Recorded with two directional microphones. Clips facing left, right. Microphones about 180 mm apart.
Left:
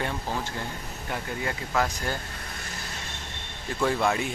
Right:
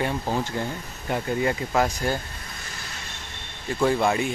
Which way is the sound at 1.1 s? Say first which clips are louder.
Right 8 dB; 25° right (ahead or behind).